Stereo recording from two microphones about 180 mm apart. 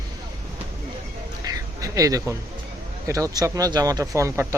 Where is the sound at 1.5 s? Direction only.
20° right (ahead or behind).